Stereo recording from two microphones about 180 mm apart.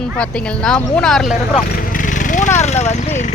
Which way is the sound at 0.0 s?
5° left (ahead or behind).